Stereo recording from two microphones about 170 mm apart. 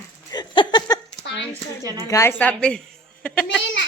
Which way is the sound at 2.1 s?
15° left (ahead or behind).